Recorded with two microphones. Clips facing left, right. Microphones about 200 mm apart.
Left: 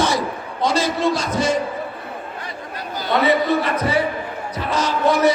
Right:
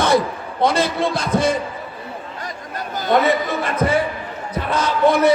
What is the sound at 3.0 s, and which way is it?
A man's voice, 50° right (ahead or behind).